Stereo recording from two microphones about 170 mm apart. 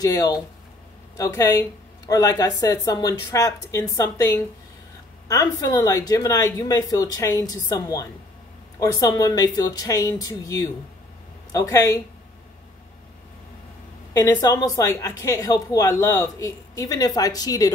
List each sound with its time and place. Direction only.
0.0 s a woman's voice: 20° left (ahead or behind)
14.1 s a woman's voice: 15° left (ahead or behind)